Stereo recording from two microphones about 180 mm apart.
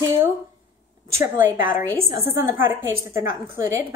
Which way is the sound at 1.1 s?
15° right (ahead or behind).